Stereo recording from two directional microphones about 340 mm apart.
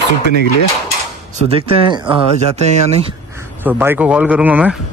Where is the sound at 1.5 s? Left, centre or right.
Centre.